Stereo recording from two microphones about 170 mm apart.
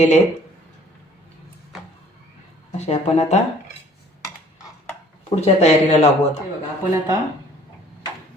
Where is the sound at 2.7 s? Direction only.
40° left (ahead or behind).